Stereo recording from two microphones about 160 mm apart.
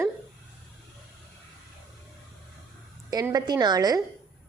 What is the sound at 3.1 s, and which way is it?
Speech, 20° right (ahead or behind).